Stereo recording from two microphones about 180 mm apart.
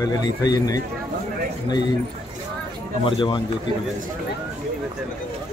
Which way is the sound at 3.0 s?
25° left (ahead or behind).